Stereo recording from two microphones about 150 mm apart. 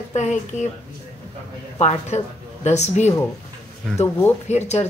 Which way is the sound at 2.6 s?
50° left (ahead or behind).